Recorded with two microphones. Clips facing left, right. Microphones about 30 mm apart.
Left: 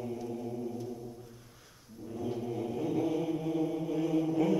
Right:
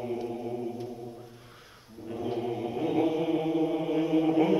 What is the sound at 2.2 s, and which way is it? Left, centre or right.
Chant, right.